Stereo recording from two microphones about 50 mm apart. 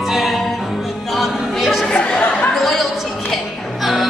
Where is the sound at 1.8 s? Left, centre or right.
Centre.